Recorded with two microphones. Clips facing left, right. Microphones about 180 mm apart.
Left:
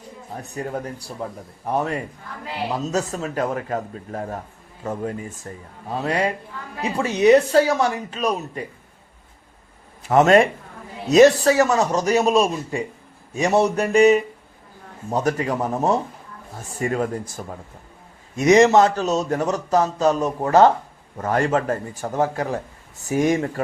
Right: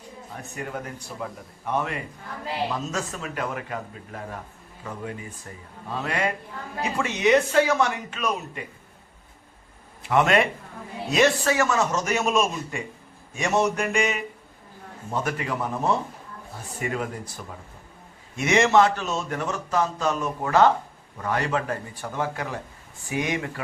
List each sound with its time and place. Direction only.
0.3 s a man's voice: 35° left (ahead or behind)
10.0 s a man's voice: 40° left (ahead or behind)